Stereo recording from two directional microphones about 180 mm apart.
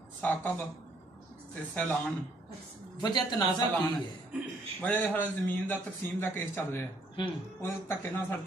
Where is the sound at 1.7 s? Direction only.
5° left (ahead or behind).